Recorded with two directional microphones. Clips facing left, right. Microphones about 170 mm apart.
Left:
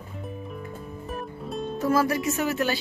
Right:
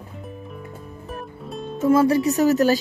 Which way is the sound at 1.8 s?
25° right (ahead or behind).